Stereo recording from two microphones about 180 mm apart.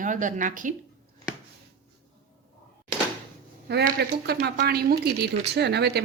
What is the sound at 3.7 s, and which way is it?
A woman's voice, 65° right (ahead or behind).